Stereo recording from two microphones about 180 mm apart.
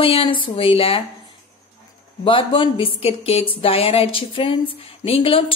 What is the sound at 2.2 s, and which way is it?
A woman's voice, 25° left (ahead or behind).